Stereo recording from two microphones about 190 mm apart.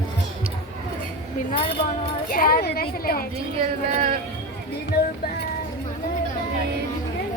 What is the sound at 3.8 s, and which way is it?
Speech, 40° right (ahead or behind).